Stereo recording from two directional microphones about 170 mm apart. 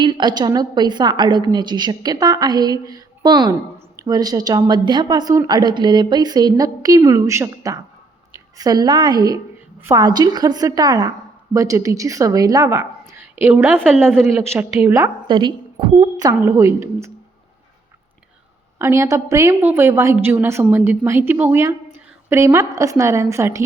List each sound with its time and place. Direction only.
0.0 s a woman's voice: 25° right (ahead or behind)
15.3 s a woman's voice: 25° right (ahead or behind)
18.8 s a woman's voice: 15° right (ahead or behind)